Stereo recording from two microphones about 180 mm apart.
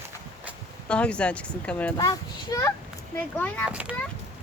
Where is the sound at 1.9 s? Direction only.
20° left (ahead or behind).